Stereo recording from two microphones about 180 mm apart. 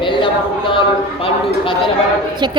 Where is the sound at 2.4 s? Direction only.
25° right (ahead or behind).